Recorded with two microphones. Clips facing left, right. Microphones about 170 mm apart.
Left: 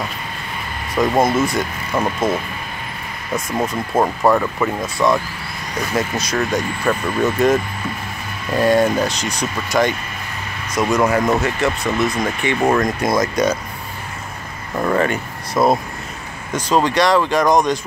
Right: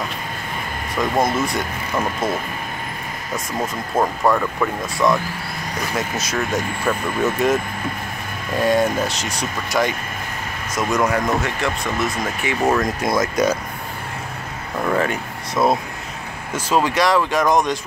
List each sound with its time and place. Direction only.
1.2 s speech: centre (ahead or behind)
4.0 s speech: 10° left (ahead or behind)
8.5 s speech: centre (ahead or behind)
14.9 s speech: centre (ahead or behind)